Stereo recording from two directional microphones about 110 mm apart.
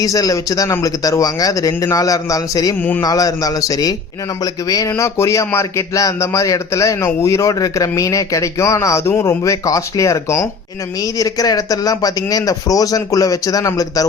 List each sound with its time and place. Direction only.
0.0 s speech: 30° left (ahead or behind)